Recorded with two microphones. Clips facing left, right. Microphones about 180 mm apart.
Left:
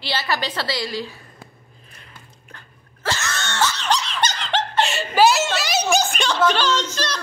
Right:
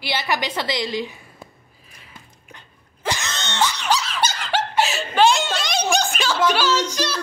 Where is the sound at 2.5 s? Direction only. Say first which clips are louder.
Right 1 dB; 15° right (ahead or behind).